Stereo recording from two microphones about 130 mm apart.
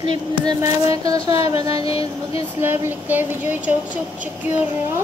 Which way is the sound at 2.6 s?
15° right (ahead or behind).